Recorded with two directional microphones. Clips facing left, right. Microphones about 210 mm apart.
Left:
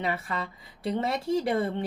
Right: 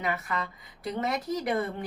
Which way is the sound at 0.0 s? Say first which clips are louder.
Left 1 dB; 30° left (ahead or behind).